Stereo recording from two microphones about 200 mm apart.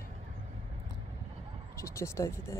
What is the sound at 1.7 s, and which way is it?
Speech, 15° left (ahead or behind).